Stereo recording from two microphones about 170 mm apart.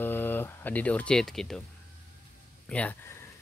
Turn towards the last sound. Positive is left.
turn(degrees=10)  # may be behind; listen again after turning